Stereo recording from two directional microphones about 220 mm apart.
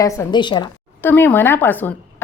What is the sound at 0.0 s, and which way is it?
Speech, 15° left (ahead or behind).